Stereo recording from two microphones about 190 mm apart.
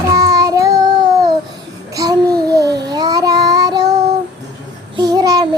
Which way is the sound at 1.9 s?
20° right (ahead or behind).